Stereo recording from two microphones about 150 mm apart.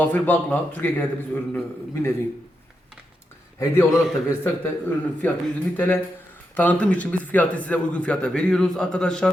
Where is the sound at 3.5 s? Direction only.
20° left (ahead or behind).